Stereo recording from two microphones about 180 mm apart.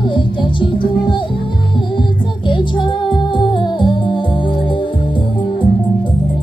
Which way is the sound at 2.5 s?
25° left (ahead or behind).